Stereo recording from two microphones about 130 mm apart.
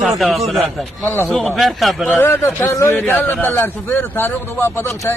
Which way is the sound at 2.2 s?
15° left (ahead or behind).